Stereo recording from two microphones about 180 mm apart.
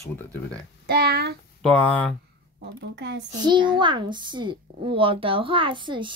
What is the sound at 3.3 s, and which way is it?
A child's voice, 25° right (ahead or behind).